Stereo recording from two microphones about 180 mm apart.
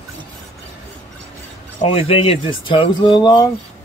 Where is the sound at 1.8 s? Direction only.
30° left (ahead or behind).